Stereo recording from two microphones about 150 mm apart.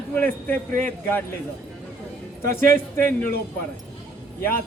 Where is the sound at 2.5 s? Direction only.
15° left (ahead or behind).